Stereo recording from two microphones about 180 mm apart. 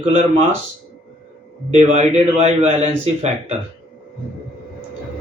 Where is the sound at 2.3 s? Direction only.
35° right (ahead or behind).